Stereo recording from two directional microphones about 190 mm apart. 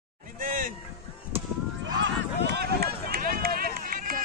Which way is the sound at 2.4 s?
55° right (ahead or behind).